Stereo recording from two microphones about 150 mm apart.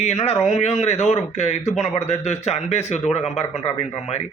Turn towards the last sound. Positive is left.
turn(degrees=45)  # may be behind; listen again after turning